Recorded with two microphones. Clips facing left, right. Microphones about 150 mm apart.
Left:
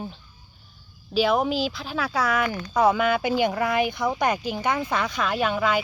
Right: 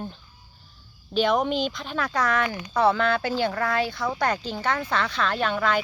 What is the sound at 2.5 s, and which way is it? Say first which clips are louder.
Speech: left 3 dB; 15° right (ahead or behind).